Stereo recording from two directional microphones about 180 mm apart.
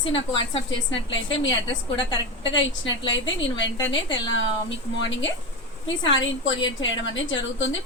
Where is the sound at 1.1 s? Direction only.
90° left.